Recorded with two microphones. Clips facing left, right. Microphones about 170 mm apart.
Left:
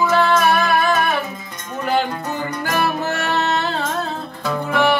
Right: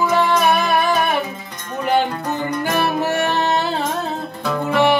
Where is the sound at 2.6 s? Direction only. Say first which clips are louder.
Right 1 dB; 15° right (ahead or behind).